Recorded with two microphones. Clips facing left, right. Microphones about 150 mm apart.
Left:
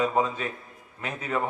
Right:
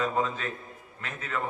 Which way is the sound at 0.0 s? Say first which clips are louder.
Left 3 dB; 15° left (ahead or behind).